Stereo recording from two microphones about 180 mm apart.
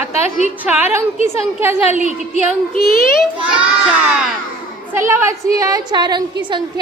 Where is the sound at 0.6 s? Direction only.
10° right (ahead or behind).